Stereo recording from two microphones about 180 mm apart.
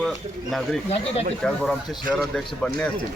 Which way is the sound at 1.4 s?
5° left (ahead or behind).